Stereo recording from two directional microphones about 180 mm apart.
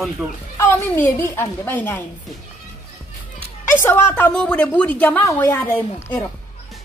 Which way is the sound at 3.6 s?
10° left (ahead or behind).